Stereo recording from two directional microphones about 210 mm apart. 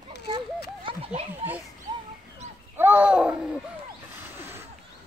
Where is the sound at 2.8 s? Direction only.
10° right (ahead or behind).